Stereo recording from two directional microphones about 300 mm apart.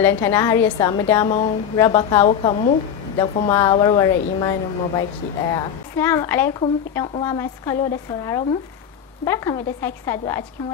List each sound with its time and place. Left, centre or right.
0.0 s a woman's voice: centre